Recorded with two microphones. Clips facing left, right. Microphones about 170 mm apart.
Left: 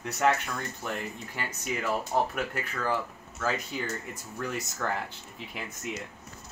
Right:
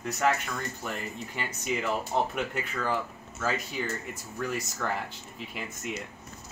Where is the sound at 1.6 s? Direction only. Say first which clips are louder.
Right 1 dB; 5° left (ahead or behind).